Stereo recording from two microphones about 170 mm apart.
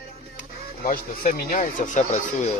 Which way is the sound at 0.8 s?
50° left (ahead or behind).